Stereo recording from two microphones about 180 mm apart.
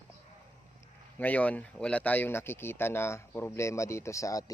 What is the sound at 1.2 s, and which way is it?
Speech, 10° left (ahead or behind).